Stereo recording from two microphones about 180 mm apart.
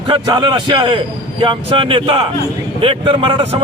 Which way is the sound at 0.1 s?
25° right (ahead or behind).